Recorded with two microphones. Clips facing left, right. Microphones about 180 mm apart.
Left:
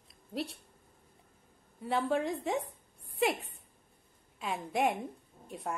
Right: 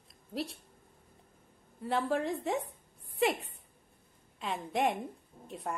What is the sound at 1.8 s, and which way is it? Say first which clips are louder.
A woman's voice: even; centre (ahead or behind).